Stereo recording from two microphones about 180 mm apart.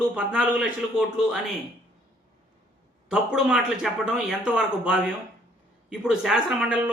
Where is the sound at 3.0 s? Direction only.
5° right (ahead or behind).